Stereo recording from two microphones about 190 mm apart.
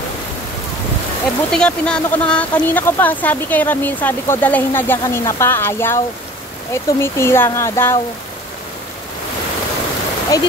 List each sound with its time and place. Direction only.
1.5 s speech: 5° left (ahead or behind)
10.3 s speech: 20° left (ahead or behind)